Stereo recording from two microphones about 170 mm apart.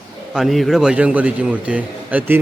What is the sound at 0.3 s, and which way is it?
A man's voice, centre (ahead or behind).